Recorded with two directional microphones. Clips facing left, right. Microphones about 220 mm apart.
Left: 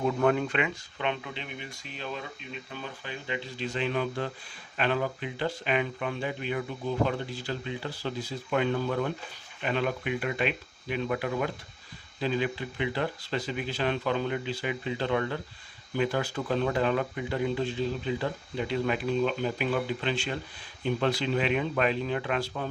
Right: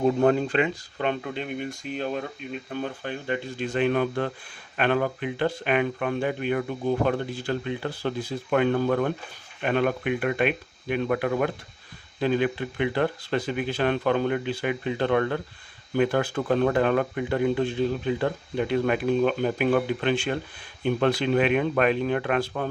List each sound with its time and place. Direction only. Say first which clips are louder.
0.0 s speech: right 5 dB; 35° right (ahead or behind); by 22.7 s 55° right (ahead or behind)